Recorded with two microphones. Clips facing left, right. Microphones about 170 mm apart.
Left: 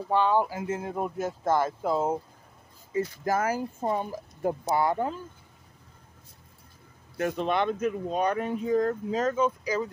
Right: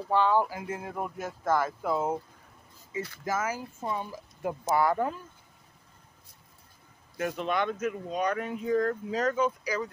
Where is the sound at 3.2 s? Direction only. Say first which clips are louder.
Left 3 dB; 35° left (ahead or behind).